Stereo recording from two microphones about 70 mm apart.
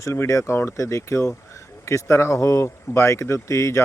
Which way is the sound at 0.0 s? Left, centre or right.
Left.